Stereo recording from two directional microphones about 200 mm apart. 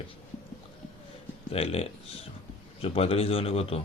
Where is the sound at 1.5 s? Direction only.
30° left (ahead or behind).